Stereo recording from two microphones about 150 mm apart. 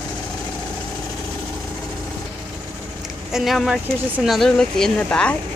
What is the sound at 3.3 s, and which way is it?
Speech, centre (ahead or behind).